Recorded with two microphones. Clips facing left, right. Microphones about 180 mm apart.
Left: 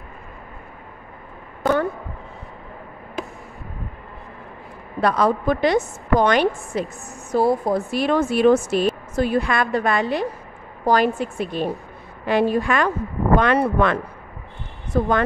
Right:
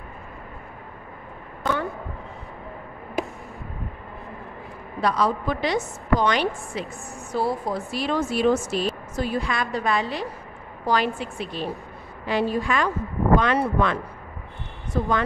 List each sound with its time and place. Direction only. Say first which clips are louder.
1.6 s a sound: left 6 dB; 45° left (ahead or behind)
5.0 s a woman's voice: left 4 dB; 55° left (ahead or behind)
14.9 s a woman's voice: left 5 dB; 55° left (ahead or behind)